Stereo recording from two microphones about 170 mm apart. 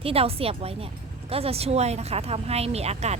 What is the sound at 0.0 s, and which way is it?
Speech, 35° right (ahead or behind).